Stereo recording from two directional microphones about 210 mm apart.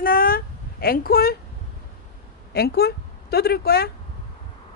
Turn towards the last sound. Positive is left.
turn(degrees=45)  # may be behind; listen again after turning